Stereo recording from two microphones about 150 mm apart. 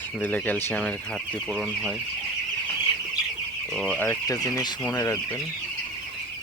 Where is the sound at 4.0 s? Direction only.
20° left (ahead or behind).